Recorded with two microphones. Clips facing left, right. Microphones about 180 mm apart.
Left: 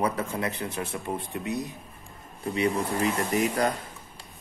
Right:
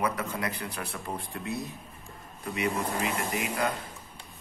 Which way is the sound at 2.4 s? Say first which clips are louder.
Left 4 dB; 30° left (ahead or behind).